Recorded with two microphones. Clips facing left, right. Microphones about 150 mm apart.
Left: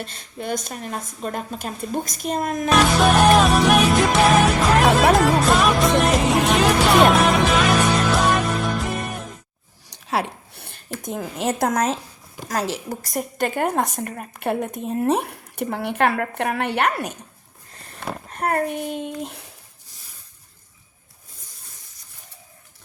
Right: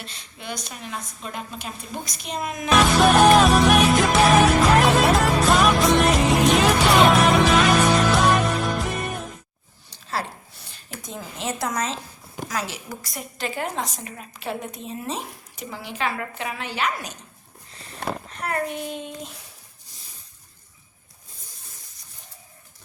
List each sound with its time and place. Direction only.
0.0 s a woman's voice: 50° left (ahead or behind)
2.6 s music: centre (ahead or behind)
10.5 s a sound: 60° left (ahead or behind)
10.9 s a woman's voice: 50° left (ahead or behind)
12.5 s a woman's voice: 40° left (ahead or behind); by 17.2 s 60° left (ahead or behind)
18.3 s a child's voice: 50° left (ahead or behind)